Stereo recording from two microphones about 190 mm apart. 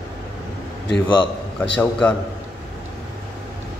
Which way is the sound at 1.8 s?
5° left (ahead or behind).